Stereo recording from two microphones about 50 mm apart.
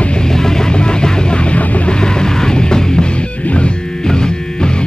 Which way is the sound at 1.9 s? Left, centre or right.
Centre.